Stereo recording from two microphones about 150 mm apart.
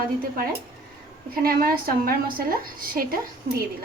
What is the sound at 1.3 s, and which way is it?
A woman's voice, 85° right.